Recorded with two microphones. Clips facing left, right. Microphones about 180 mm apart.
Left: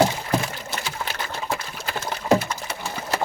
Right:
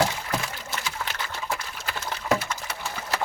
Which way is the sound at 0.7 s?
30° left (ahead or behind).